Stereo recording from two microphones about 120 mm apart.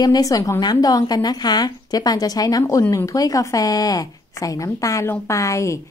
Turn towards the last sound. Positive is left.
turn(degrees=25)  # may be behind; listen again after turning